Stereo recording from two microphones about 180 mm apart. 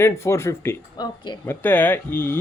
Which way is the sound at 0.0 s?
15° left (ahead or behind).